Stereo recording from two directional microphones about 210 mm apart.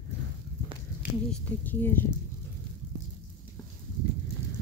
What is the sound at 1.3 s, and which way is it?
Speech, 10° left (ahead or behind).